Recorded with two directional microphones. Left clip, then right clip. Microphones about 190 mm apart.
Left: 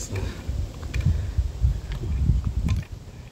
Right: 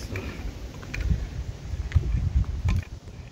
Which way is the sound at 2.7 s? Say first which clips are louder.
Left 1 dB; 20° right (ahead or behind).